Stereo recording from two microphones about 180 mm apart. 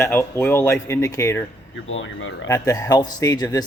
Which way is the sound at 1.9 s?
90° left.